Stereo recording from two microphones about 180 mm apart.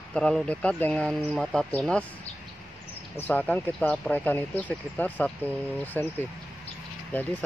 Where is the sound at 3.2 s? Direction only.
10° left (ahead or behind).